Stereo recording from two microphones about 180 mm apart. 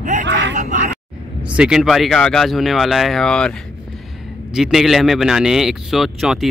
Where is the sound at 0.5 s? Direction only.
45° right (ahead or behind).